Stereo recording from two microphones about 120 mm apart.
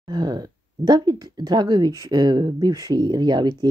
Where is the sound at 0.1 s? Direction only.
35° right (ahead or behind).